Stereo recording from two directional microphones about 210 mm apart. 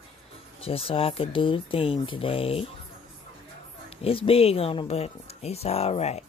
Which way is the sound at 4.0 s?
25° left (ahead or behind).